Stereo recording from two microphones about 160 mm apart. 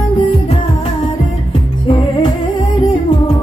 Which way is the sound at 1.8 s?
30° left (ahead or behind).